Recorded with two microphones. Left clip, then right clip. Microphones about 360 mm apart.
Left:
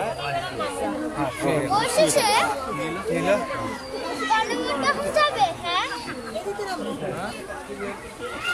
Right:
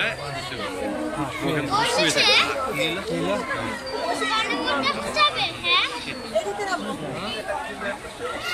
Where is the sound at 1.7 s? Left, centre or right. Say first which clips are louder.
Even; centre.